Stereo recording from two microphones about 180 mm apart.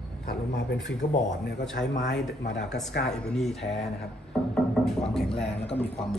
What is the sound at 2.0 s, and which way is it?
Speech, 80° left.